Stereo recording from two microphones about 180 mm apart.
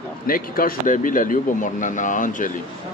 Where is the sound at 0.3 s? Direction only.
50° left (ahead or behind).